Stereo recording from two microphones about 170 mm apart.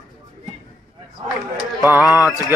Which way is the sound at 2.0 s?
20° left (ahead or behind).